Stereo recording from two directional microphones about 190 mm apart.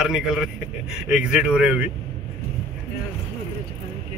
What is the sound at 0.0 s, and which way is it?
Speech, 5° right (ahead or behind).